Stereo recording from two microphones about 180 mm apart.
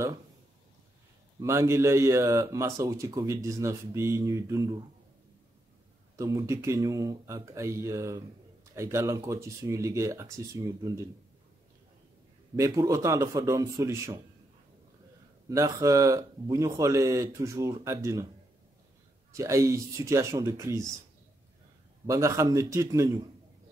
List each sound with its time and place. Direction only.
1.4 s speech: 15° right (ahead or behind)
6.1 s speech: 20° right (ahead or behind)
12.5 s speech: 20° right (ahead or behind)
15.5 s speech: 15° right (ahead or behind)
19.3 s speech: 15° right (ahead or behind)
22.0 s speech: 15° right (ahead or behind)